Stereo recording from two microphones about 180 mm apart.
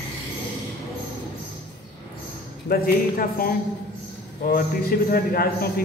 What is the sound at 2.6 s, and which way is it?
A man's voice, 55° left (ahead or behind).